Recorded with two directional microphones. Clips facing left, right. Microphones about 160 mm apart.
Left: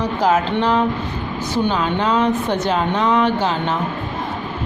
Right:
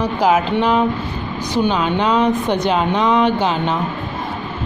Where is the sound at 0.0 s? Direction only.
10° right (ahead or behind).